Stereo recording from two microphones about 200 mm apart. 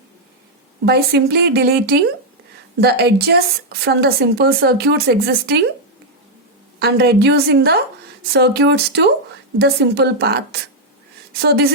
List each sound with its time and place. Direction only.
0.9 s speech: 55° right (ahead or behind)
6.7 s a woman's voice: 55° right (ahead or behind)